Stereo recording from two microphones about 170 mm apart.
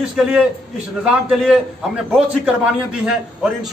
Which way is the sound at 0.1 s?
5° right (ahead or behind).